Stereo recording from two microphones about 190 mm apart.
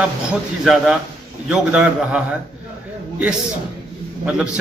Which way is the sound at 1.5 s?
5° right (ahead or behind).